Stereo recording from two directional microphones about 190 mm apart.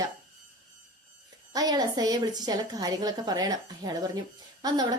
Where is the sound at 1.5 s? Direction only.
20° right (ahead or behind).